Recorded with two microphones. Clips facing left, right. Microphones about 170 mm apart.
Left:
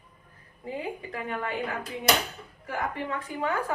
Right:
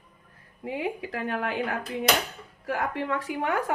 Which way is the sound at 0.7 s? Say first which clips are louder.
Right 3 dB; 80° right.